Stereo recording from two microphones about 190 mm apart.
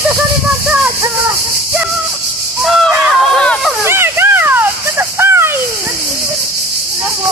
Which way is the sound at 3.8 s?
15° right (ahead or behind).